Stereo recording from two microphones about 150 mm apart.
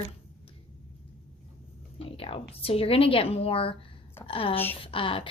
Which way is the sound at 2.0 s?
40° left (ahead or behind).